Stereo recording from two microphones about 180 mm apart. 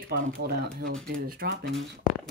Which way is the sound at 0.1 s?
60° right (ahead or behind).